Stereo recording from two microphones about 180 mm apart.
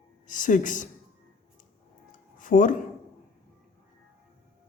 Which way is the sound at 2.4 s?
45° left (ahead or behind).